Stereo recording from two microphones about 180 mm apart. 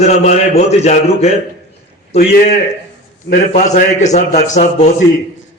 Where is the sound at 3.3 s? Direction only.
40° left (ahead or behind).